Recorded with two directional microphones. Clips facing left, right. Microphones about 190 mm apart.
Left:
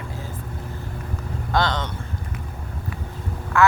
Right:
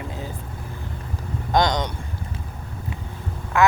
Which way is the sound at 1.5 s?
15° right (ahead or behind).